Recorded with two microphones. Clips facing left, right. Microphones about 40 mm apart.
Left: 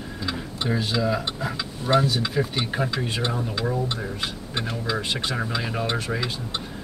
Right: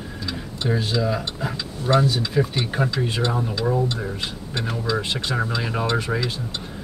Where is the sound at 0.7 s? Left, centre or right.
Centre.